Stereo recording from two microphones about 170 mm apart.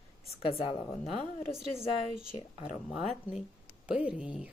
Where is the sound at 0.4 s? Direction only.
30° left (ahead or behind).